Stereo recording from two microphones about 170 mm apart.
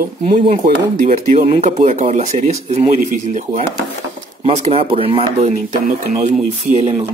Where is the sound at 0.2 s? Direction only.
45° right (ahead or behind).